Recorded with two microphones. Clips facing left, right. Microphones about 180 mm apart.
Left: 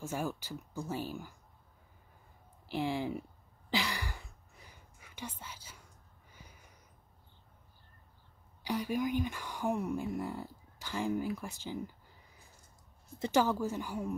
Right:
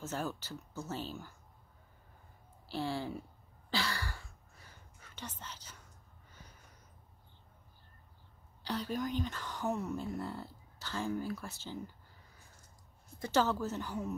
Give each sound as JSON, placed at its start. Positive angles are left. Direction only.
{"t": 0.0, "sound": "speech", "side_deg": 10}
{"t": 2.7, "sound": "speech", "side_deg": 15}
{"t": 3.7, "sound": "whispering", "side_deg": 15}
{"t": 6.3, "sound": "a sound", "side_deg": 10}
{"t": 8.6, "sound": "speech", "side_deg": 10}
{"t": 13.2, "sound": "speech", "side_deg": 15}